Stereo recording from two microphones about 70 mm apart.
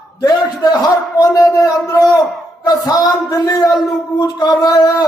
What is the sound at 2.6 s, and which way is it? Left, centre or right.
A man's voice, left.